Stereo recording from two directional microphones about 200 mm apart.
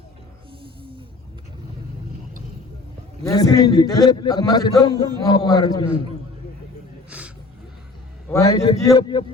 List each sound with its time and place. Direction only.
0.6 s music: 25° right (ahead or behind)
3.2 s a man's voice: 20° left (ahead or behind)
7.1 s a sound: 5° right (ahead or behind)
8.3 s a man's voice: 15° left (ahead or behind)